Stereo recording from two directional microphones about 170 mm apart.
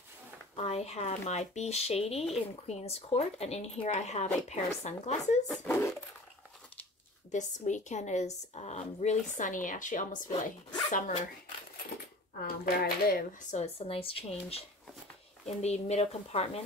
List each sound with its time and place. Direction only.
0.6 s speech: 40° left (ahead or behind)
5.5 s speech: 5° left (ahead or behind)
7.2 s speech: 45° left (ahead or behind)
12.4 s speech: 60° left (ahead or behind)
13.5 s speech: 40° left (ahead or behind)